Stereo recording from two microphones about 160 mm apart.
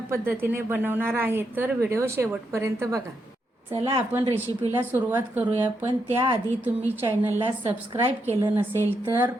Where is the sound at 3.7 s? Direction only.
35° right (ahead or behind).